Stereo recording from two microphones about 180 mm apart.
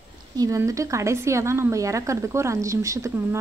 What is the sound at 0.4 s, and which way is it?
A woman's voice, 20° right (ahead or behind).